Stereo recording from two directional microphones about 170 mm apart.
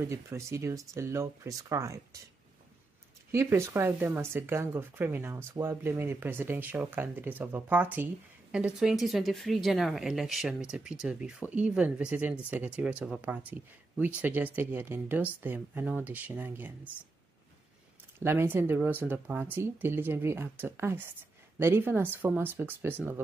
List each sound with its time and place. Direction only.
0.0 s speech: 15° right (ahead or behind)
3.3 s speech: 15° right (ahead or behind)
18.2 s speech: 15° right (ahead or behind)